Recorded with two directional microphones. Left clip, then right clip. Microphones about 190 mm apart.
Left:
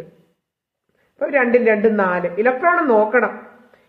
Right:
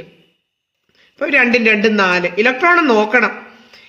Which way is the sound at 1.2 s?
60° right (ahead or behind).